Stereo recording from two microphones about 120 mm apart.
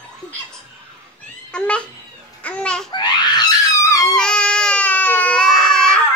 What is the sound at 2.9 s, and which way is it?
Baby laughter, 35° left (ahead or behind).